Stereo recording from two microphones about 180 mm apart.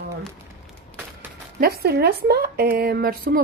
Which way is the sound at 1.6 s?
60° right (ahead or behind).